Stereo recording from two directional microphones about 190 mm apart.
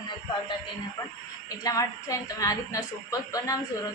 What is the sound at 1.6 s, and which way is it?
A woman's voice, 15° left (ahead or behind).